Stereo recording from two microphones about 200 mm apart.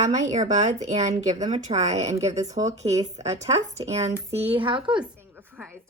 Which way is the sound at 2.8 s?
15° right (ahead or behind).